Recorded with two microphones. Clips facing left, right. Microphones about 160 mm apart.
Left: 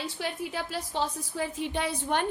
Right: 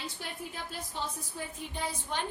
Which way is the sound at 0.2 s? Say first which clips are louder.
Left 8 dB; 90° left.